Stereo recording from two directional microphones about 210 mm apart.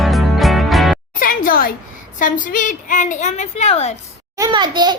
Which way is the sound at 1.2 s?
40° left (ahead or behind).